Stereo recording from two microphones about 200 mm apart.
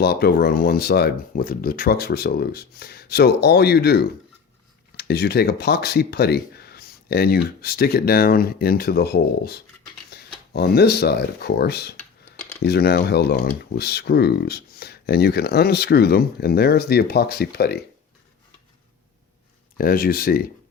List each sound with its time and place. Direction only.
0.0 s speech: 50° left (ahead or behind)
19.7 s speech: 45° left (ahead or behind)